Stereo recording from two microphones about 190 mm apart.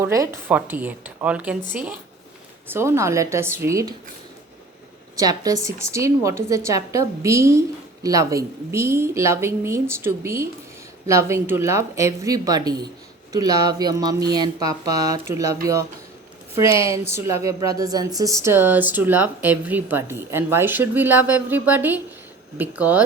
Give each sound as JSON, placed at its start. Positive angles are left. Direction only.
{"t": 0.0, "sound": "speech", "side_deg": -15}
{"t": 5.1, "sound": "speech", "side_deg": -20}
{"t": 16.6, "sound": "a woman's voice", "side_deg": 30}
{"t": 17.2, "sound": "speech", "side_deg": -15}